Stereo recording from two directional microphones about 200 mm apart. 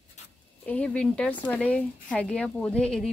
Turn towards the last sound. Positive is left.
turn(degrees=5)  # may be behind; listen again after turning